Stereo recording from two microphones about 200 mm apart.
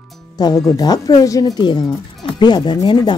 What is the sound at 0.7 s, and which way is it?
Speech, 20° left (ahead or behind).